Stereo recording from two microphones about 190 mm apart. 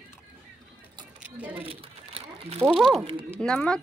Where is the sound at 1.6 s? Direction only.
30° right (ahead or behind).